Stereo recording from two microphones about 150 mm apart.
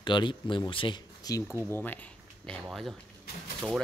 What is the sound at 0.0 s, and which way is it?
Speech, 30° left (ahead or behind).